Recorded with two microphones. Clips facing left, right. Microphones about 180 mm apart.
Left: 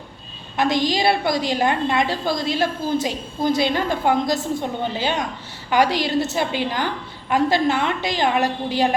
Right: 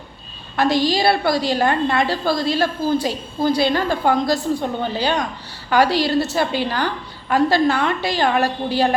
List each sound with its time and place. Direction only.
0.5 s a woman's voice: 20° left (ahead or behind)